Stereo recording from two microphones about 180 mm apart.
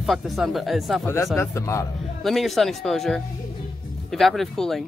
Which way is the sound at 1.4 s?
15° left (ahead or behind).